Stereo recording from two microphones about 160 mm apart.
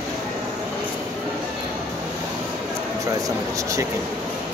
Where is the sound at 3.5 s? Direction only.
20° right (ahead or behind).